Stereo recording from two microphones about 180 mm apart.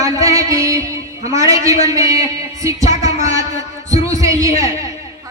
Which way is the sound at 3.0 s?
20° right (ahead or behind).